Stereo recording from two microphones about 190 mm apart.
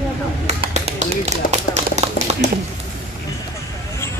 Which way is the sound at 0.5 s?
35° right (ahead or behind).